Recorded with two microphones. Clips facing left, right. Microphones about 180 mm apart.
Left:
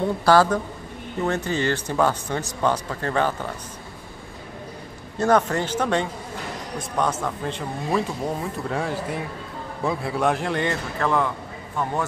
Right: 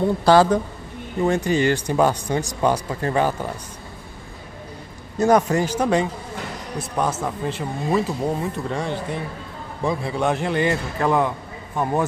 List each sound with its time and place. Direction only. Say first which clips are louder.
0.2 s speech: right 2 dB; 20° right (ahead or behind)
5.2 s speech: right 3 dB; 10° right (ahead or behind)
11.0 s speech: right 2 dB; 15° right (ahead or behind)